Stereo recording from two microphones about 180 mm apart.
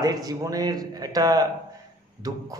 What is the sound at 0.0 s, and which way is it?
A man's voice, 20° right (ahead or behind).